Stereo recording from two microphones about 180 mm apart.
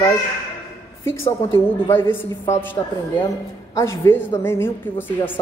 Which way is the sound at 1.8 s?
10° left (ahead or behind).